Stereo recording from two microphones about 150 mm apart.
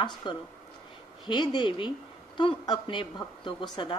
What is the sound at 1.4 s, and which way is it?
A woman's voice, 30° left (ahead or behind).